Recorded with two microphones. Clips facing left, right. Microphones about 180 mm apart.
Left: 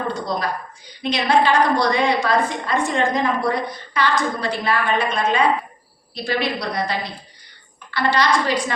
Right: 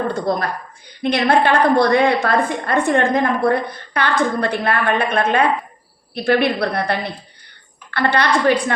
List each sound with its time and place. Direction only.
0.1 s a woman's voice: 55° right (ahead or behind)